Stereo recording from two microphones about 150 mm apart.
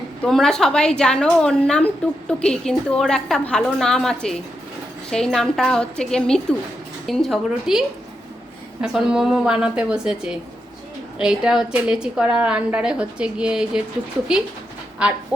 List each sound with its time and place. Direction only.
0.2 s a woman's voice: centre (ahead or behind)
15.0 s fowl: 5° right (ahead or behind)